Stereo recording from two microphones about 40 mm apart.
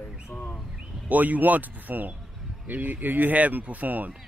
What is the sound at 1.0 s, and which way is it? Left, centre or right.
Speech, right.